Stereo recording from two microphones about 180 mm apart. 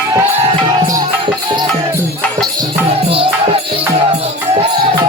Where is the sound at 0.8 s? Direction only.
20° right (ahead or behind).